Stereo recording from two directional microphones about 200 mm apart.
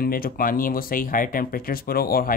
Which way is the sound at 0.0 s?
45° left (ahead or behind).